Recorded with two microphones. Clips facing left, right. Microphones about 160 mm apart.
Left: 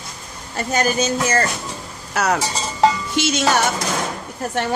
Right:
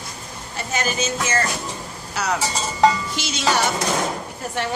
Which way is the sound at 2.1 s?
55° left (ahead or behind).